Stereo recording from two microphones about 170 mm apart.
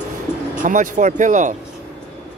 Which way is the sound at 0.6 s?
50° right (ahead or behind).